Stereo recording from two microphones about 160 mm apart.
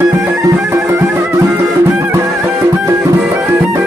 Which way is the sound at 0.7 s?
20° right (ahead or behind).